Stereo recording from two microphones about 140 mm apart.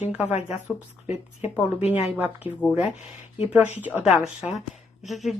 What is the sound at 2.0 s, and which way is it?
Speech, 10° right (ahead or behind).